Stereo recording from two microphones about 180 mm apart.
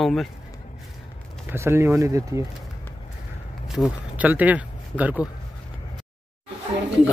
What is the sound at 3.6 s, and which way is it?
Speech, 5° right (ahead or behind).